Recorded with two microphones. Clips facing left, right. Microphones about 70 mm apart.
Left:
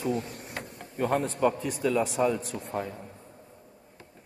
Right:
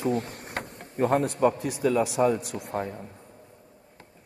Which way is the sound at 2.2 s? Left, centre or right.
Centre.